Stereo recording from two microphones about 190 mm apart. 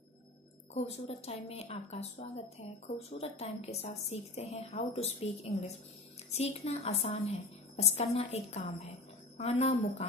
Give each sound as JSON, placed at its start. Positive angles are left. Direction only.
{"t": 0.7, "sound": "speech", "side_deg": 35}